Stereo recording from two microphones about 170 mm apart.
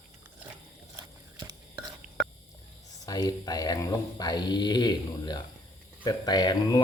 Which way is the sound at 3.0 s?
20° left (ahead or behind).